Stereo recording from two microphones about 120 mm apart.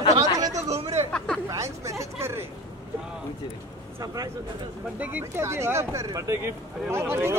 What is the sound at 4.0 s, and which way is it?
Speech, 30° right (ahead or behind).